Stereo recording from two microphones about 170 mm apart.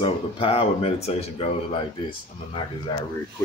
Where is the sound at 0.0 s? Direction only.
35° left (ahead or behind).